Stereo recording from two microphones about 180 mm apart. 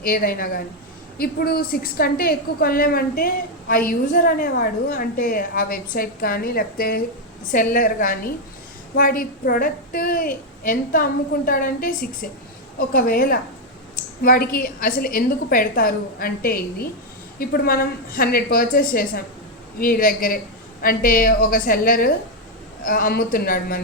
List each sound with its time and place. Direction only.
0.0 s a woman's voice: 50° left (ahead or behind)